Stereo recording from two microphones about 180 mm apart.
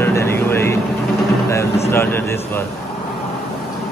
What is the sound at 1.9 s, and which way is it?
Speech, 10° left (ahead or behind).